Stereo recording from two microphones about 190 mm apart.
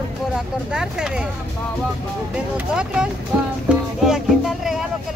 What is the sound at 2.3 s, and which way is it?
Speech, 5° right (ahead or behind).